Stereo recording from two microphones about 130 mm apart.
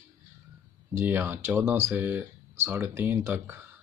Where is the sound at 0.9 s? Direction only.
15° right (ahead or behind).